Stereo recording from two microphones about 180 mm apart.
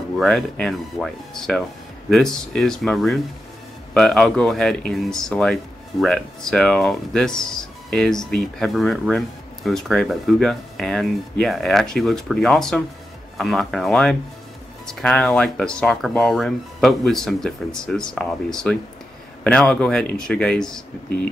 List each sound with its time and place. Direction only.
0.2 s speech: centre (ahead or behind)